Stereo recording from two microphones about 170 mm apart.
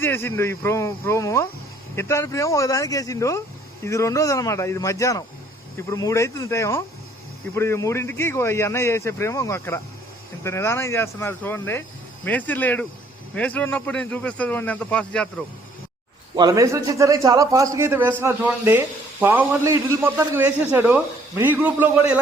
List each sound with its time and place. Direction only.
0.0 s speech: 10° left (ahead or behind)
16.3 s a man's voice: 25° right (ahead or behind)